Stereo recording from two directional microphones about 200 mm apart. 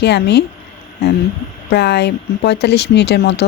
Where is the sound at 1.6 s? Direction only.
55° left (ahead or behind).